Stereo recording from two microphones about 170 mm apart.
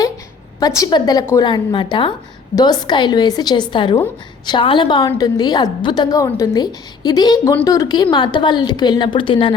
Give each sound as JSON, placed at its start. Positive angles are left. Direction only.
{"t": 0.8, "sound": "a woman's voice", "side_deg": 25}